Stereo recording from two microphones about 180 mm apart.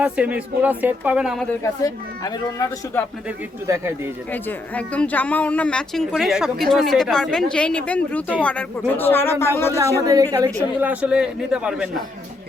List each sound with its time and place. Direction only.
0.0 s speech: 5° right (ahead or behind)
1.6 s speech: 20° left (ahead or behind)
3.7 s speech: 15° right (ahead or behind)
4.3 s speech: 10° left (ahead or behind)
9.7 s speech: 20° right (ahead or behind)
10.8 s speech: 10° right (ahead or behind)